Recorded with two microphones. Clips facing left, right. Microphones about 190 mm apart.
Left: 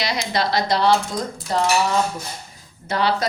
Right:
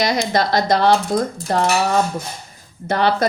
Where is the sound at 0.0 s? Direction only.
45° right (ahead or behind).